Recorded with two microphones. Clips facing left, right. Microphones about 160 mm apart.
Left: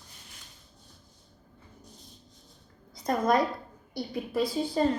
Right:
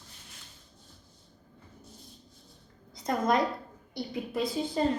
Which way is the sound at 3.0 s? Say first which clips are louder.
Left 2 dB; 20° right (ahead or behind).